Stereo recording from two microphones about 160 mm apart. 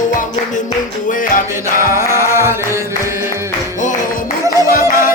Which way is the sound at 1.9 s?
15° right (ahead or behind).